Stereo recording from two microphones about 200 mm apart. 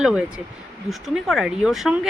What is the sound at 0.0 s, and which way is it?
Speech, 5° right (ahead or behind).